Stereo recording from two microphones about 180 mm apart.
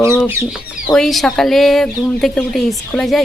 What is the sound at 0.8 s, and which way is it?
Speech, centre (ahead or behind).